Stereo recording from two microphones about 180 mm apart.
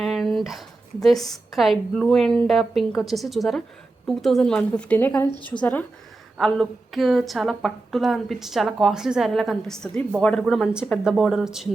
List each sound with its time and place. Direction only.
0.0 s a sound: centre (ahead or behind)
1.0 s a woman's voice: centre (ahead or behind)
5.3 s speech: 25° right (ahead or behind)
6.3 s a woman's voice: centre (ahead or behind)